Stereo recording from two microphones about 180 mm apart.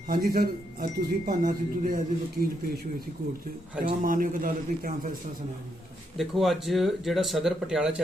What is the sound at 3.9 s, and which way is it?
Speech, 50° right (ahead or behind).